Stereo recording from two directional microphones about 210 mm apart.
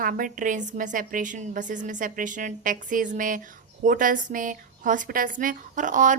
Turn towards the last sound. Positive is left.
turn(degrees=-35)  # may be behind; listen again after turning